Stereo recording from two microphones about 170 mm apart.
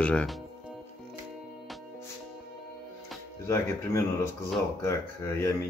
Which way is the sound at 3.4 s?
15° left (ahead or behind).